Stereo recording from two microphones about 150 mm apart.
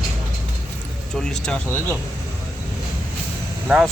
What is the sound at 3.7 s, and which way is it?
Speech, 10° right (ahead or behind).